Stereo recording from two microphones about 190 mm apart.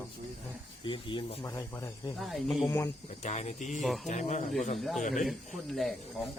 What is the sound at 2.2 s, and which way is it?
Speech, centre (ahead or behind).